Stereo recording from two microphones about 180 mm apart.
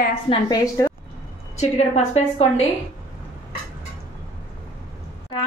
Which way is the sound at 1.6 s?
40° left (ahead or behind).